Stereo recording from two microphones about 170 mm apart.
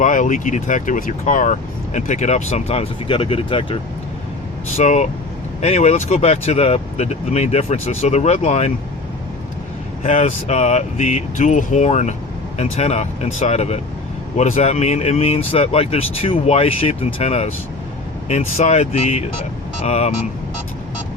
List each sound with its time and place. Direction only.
0.0 s speech: 50° left (ahead or behind); by 3.8 s 30° left (ahead or behind)
4.8 s speech: 45° left (ahead or behind)
10.0 s speech: 40° left (ahead or behind)